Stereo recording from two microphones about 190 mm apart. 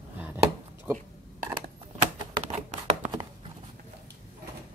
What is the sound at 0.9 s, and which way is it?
Speech, 15° right (ahead or behind).